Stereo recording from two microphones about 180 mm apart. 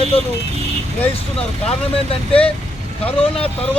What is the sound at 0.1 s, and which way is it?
Speech, 30° left (ahead or behind).